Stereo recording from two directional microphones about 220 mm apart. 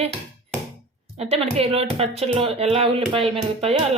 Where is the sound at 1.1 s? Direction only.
30° right (ahead or behind).